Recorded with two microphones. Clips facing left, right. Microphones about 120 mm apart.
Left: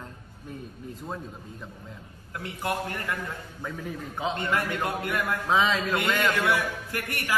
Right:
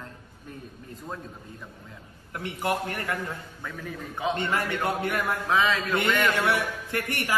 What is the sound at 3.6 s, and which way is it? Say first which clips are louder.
Speech: left 6 dB; 10° left (ahead or behind).